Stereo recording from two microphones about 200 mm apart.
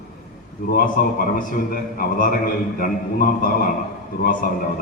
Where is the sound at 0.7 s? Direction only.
45° left (ahead or behind).